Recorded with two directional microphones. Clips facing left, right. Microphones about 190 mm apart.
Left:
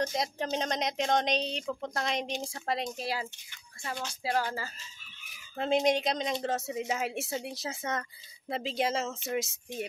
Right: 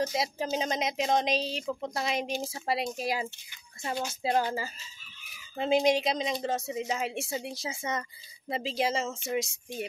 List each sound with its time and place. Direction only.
0.0 s speech: 5° right (ahead or behind); by 4.6 s 20° right (ahead or behind)
5.6 s speech: centre (ahead or behind)